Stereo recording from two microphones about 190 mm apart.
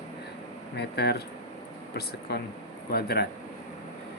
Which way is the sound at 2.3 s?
60° left (ahead or behind).